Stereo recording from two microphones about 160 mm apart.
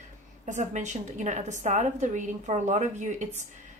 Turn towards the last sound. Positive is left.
turn(degrees=-50)  # may be behind; listen again after turning